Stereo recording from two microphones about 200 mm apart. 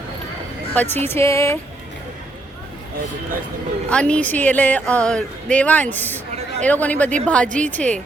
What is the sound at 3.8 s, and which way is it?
Speech, 5° left (ahead or behind).